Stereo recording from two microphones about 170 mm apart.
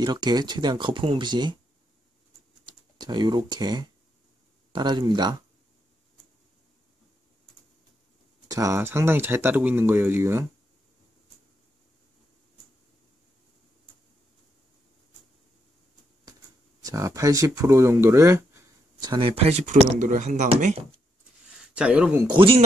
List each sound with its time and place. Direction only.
0.0 s speech: 25° right (ahead or behind)
2.6 s speech: 25° right (ahead or behind)
8.5 s speech: 20° right (ahead or behind)
16.8 s speech: 20° right (ahead or behind)
19.0 s speech: 30° right (ahead or behind)
20.0 s speech: 45° right (ahead or behind)
21.5 s speech: 5° right (ahead or behind)
22.3 s speech: 30° right (ahead or behind)